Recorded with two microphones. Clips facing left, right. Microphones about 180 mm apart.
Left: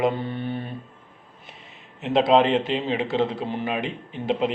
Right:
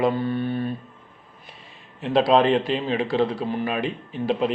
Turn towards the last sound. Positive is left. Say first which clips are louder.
# right 1 dB
turn(degrees=20)  # may be behind; listen again after turning